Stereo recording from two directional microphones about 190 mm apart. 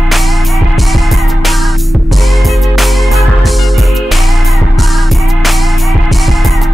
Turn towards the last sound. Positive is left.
turn(degrees=0)  # may be behind; listen again after turning